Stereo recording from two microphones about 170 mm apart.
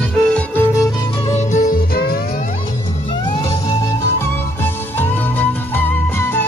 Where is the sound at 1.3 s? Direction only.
45° left (ahead or behind); by 2.2 s 60° left (ahead or behind).